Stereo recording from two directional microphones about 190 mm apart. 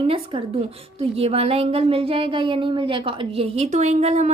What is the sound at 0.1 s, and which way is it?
Speech, 30° right (ahead or behind).